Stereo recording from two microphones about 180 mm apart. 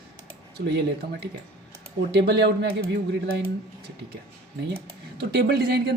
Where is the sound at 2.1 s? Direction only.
65° right (ahead or behind).